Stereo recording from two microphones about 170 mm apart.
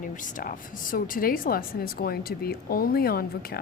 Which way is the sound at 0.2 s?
55° left (ahead or behind).